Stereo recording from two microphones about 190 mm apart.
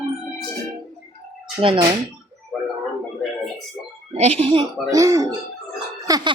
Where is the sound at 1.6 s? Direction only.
25° right (ahead or behind).